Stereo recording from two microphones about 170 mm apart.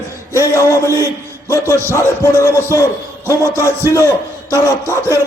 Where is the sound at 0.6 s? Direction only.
15° left (ahead or behind).